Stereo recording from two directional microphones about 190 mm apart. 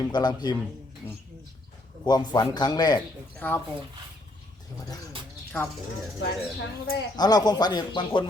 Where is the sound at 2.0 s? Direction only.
20° left (ahead or behind).